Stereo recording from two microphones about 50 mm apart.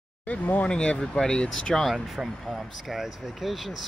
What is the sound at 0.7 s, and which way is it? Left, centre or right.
Speech, left.